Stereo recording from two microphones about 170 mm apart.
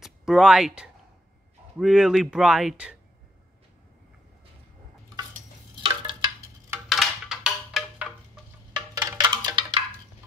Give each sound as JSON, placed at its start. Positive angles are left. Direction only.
{"t": 0.0, "sound": "speech", "side_deg": 0}
{"t": 5.8, "sound": "a sound", "side_deg": -30}
{"t": 6.9, "sound": "music", "side_deg": 0}
{"t": 8.7, "sound": "percussion", "side_deg": -25}